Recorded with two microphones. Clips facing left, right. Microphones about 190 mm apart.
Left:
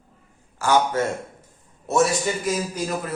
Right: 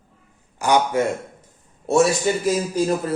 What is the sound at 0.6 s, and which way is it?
Speech, 15° right (ahead or behind).